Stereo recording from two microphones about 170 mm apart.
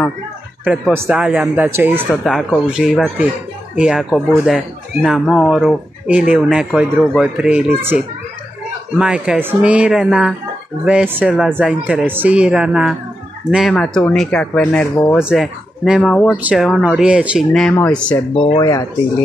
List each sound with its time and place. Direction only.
0.7 s speech: 5° right (ahead or behind)
2.0 s speech: centre (ahead or behind)
15.2 s speech: centre (ahead or behind)
18.6 s speech: 20° left (ahead or behind)